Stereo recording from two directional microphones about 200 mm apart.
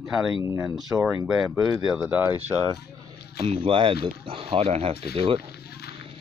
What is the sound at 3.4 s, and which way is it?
Speech, 25° right (ahead or behind).